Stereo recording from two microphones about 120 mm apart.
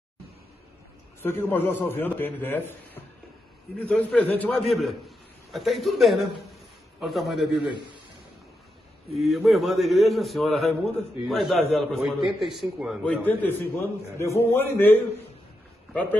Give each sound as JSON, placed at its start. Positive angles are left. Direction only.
{"t": 1.2, "sound": "a man's voice", "side_deg": 20}
{"t": 9.1, "sound": "a man's voice", "side_deg": 0}
{"t": 13.0, "sound": "a man's voice", "side_deg": 15}